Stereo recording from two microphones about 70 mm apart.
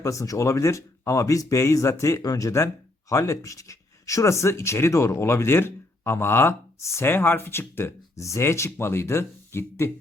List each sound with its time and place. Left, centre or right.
0.0 s speech: left
8.1 s speech: left